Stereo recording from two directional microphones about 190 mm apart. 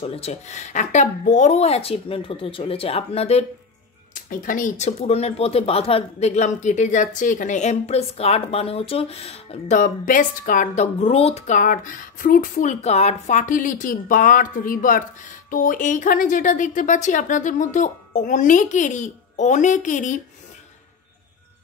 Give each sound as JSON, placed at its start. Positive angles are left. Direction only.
{"t": 0.0, "sound": "speech", "side_deg": 30}
{"t": 4.1, "sound": "speech", "side_deg": 45}